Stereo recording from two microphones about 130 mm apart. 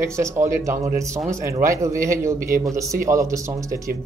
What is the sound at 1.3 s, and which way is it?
A man's voice, 25° right (ahead or behind).